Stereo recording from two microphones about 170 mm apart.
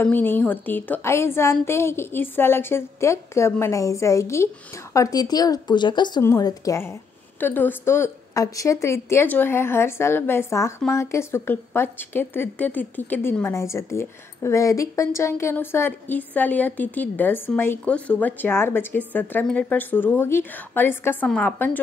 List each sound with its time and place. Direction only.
0.0 s a woman's voice: 10° left (ahead or behind)